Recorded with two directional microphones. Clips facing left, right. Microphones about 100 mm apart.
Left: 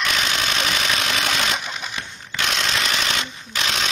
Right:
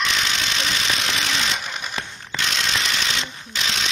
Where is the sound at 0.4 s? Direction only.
55° left (ahead or behind).